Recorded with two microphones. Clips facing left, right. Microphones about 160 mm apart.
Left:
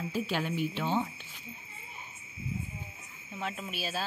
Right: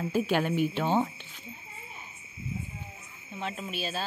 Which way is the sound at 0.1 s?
55° right (ahead or behind).